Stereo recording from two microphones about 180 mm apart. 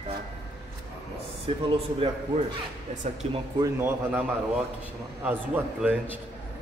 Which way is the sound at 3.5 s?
15° right (ahead or behind).